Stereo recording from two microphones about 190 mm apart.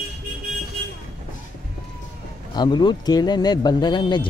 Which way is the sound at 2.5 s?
25° left (ahead or behind).